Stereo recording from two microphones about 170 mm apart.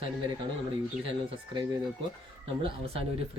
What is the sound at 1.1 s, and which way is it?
Speech, 25° right (ahead or behind).